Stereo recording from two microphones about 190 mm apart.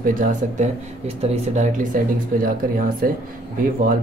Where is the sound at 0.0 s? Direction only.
45° right (ahead or behind).